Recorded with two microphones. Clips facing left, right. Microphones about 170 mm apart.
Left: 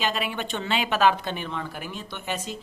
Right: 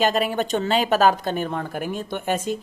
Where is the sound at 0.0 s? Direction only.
45° right (ahead or behind).